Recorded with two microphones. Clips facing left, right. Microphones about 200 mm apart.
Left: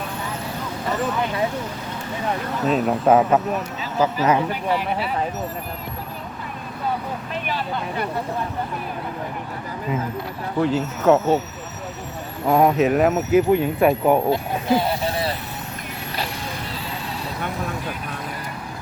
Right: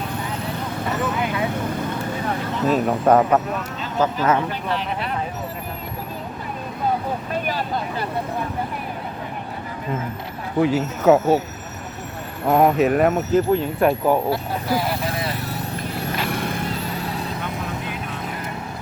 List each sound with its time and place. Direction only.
2.6 s speech: centre (ahead or behind)
7.4 s speech: 40° right (ahead or behind)
10.6 s speech: 10° right (ahead or behind)
12.5 s speech: 5° right (ahead or behind)
14.1 s speech: 20° left (ahead or behind)